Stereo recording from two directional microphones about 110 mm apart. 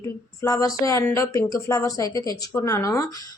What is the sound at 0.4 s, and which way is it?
A woman's voice, 30° left (ahead or behind).